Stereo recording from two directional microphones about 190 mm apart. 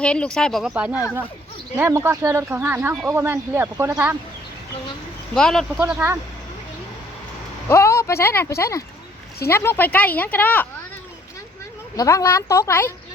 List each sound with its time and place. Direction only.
0.0 s speech: 5° left (ahead or behind)
5.3 s speech: centre (ahead or behind)
7.7 s speech: 15° left (ahead or behind)
11.9 s speech: 15° left (ahead or behind)